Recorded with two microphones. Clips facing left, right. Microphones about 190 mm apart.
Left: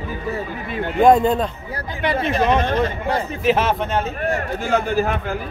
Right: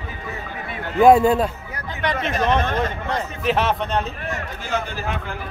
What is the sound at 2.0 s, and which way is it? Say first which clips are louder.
Speech: left 3 dB; 10° left (ahead or behind).